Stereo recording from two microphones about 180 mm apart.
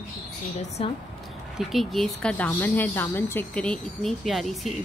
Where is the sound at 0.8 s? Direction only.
35° left (ahead or behind).